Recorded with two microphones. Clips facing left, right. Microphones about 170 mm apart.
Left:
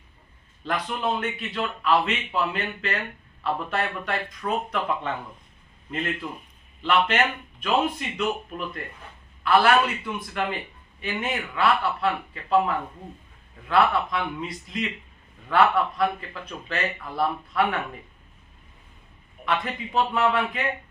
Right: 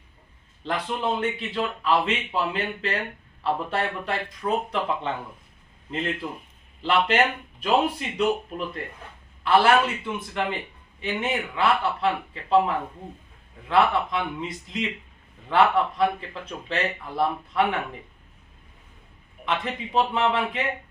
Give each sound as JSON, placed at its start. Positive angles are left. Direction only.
{"t": 0.6, "sound": "speech", "side_deg": -25}
{"t": 6.8, "sound": "speech", "side_deg": -30}
{"t": 19.5, "sound": "speech", "side_deg": -25}